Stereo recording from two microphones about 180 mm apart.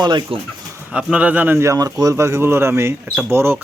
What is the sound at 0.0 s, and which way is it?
Speech, 25° right (ahead or behind).